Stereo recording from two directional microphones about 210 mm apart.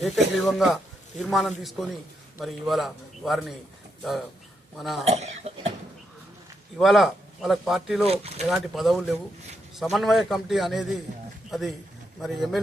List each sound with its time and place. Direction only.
0.0 s speech: centre (ahead or behind)
4.8 s speech: centre (ahead or behind)
5.0 s speech: 30° right (ahead or behind)
6.7 s speech: centre (ahead or behind)
8.0 s speech: 30° right (ahead or behind)
8.4 s speech: centre (ahead or behind)